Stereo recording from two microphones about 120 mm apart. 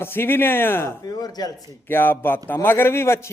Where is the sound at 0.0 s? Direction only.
20° left (ahead or behind).